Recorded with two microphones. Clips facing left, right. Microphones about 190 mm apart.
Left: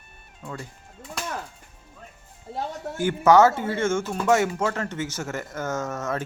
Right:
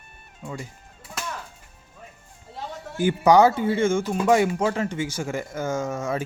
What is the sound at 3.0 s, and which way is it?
Speech, 15° right (ahead or behind).